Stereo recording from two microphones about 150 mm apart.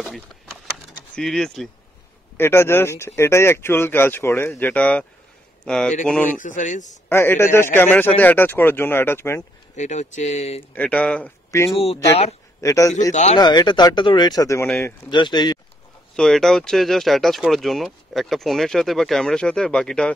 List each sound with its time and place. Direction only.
0.0 s speech: centre (ahead or behind)
2.3 s speech: 15° left (ahead or behind)
6.3 s speech: 60° left (ahead or behind)
7.1 s speech: 15° left (ahead or behind)
9.8 s speech: 50° left (ahead or behind)
10.7 s speech: 10° left (ahead or behind)
11.7 s speech: 40° left (ahead or behind)
12.6 s speech: 20° left (ahead or behind)
13.1 s speech: 50° left (ahead or behind)
13.4 s speech: 30° left (ahead or behind)
16.2 s speech: 5° left (ahead or behind)